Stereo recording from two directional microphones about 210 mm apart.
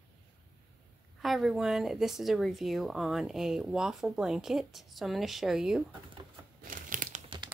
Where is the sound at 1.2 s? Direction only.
Centre (ahead or behind).